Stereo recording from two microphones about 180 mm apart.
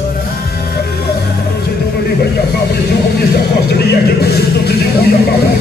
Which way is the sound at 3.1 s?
65° left (ahead or behind).